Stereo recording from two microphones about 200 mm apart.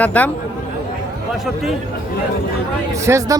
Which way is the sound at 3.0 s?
15° right (ahead or behind).